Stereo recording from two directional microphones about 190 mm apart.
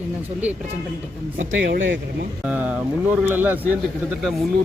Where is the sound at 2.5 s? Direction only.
10° right (ahead or behind).